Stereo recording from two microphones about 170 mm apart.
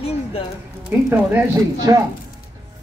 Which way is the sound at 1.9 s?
20° right (ahead or behind).